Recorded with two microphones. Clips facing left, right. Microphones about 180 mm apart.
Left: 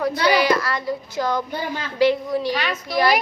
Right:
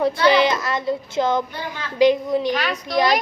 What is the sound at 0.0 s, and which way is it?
A child's voice, 25° right (ahead or behind).